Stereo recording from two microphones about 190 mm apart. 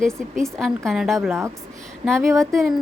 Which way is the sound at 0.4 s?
Centre (ahead or behind).